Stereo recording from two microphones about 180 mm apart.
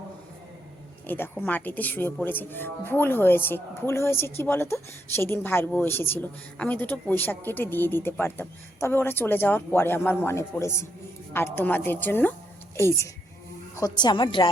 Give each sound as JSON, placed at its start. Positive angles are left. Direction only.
{"t": 1.0, "sound": "a woman's voice", "side_deg": 10}